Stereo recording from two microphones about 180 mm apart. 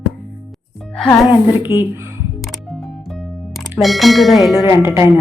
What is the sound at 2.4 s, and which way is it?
Music, centre (ahead or behind).